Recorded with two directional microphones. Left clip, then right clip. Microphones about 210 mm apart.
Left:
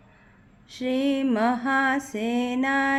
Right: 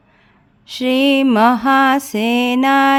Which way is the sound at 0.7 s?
50° right (ahead or behind).